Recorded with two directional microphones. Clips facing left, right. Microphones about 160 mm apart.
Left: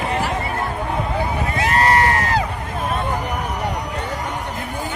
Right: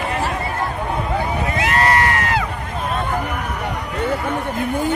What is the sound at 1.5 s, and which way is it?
Crowd, 30° left (ahead or behind).